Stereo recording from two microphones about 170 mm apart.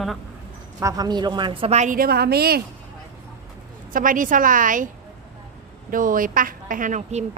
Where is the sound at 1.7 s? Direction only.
45° right (ahead or behind); by 2.6 s 65° right (ahead or behind).